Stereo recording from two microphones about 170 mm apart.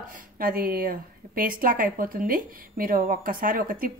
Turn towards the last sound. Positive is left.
turn(degrees=-55)  # may be behind; listen again after turning